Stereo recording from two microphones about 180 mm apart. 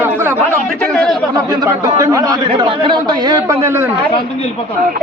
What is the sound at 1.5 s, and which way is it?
Speech, 20° right (ahead or behind).